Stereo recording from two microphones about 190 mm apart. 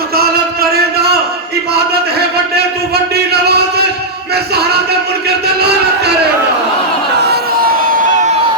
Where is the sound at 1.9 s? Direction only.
55° right (ahead or behind).